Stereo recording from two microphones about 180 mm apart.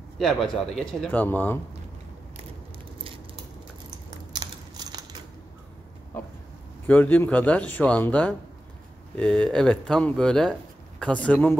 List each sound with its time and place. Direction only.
0.2 s a man's voice: centre (ahead or behind)
4.3 s a sound: 25° right (ahead or behind)
6.9 s a man's voice: 10° left (ahead or behind)